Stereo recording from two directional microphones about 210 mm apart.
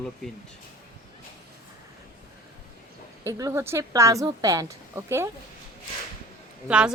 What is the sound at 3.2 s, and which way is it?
A woman's voice, 15° right (ahead or behind).